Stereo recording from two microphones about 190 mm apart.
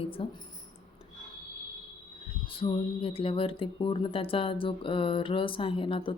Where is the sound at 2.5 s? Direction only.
30° left (ahead or behind).